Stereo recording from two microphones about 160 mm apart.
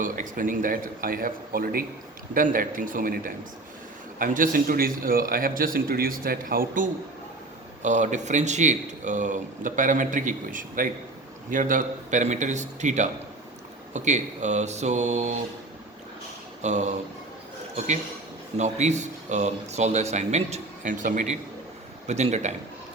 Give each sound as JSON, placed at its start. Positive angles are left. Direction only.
{"t": 0.0, "sound": "a man's voice", "side_deg": -55}
{"t": 7.8, "sound": "speech", "side_deg": -50}
{"t": 16.6, "sound": "speech", "side_deg": -45}
{"t": 18.5, "sound": "speech", "side_deg": -45}